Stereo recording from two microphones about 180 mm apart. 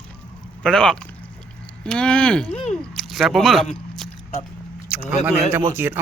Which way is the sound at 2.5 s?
35° left (ahead or behind).